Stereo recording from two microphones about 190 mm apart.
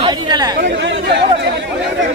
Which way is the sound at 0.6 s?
70° right (ahead or behind).